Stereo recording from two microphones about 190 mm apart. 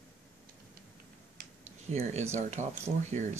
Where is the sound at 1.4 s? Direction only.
35° right (ahead or behind).